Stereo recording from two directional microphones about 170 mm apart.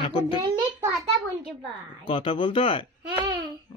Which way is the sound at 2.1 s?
30° left (ahead or behind).